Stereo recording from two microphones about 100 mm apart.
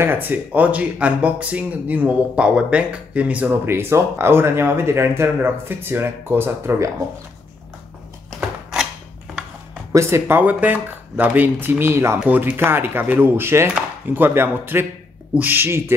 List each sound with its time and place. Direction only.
0.0 s speech: 20° right (ahead or behind)
3.4 s speech: 25° right (ahead or behind)
9.9 s speech: 25° right (ahead or behind)